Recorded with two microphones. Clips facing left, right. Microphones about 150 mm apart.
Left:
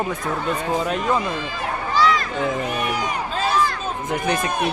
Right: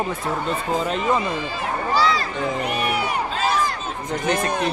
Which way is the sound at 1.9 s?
35° right (ahead or behind).